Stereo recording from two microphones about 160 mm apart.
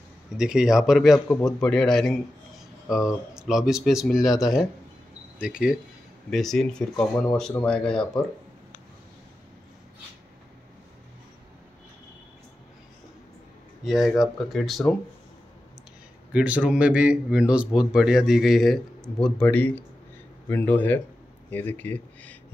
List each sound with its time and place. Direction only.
0.4 s a man's voice: 5° right (ahead or behind)
3.3 s a man's voice: 5° right (ahead or behind)
13.8 s a man's voice: centre (ahead or behind)
16.3 s a man's voice: 10° right (ahead or behind); by 22.4 s 10° left (ahead or behind)